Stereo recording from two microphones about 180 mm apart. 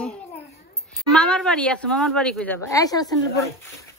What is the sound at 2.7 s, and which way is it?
Speech, 20° left (ahead or behind).